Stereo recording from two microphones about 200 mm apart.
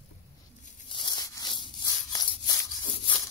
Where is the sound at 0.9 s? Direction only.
25° left (ahead or behind).